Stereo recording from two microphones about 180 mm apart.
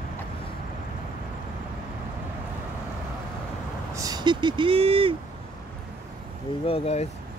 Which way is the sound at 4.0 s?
20° right (ahead or behind).